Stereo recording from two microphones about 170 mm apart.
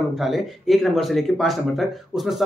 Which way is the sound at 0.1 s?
Centre (ahead or behind).